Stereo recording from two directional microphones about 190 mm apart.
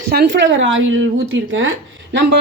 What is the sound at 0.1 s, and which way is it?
A woman's voice, 60° right (ahead or behind).